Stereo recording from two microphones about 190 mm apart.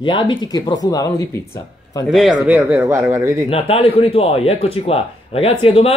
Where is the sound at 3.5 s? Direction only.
30° left (ahead or behind).